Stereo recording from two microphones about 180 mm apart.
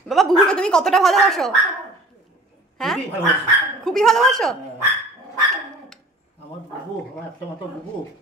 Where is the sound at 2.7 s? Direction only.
Centre (ahead or behind).